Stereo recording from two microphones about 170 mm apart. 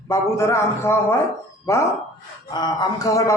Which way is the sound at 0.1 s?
15° left (ahead or behind).